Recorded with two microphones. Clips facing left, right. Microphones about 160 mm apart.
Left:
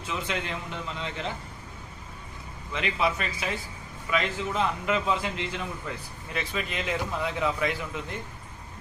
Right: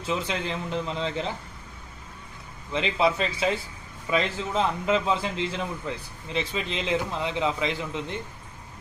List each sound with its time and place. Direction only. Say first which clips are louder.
0.1 s a man's voice: right 3 dB; 35° right (ahead or behind)
2.7 s a man's voice: right 4 dB; 25° right (ahead or behind)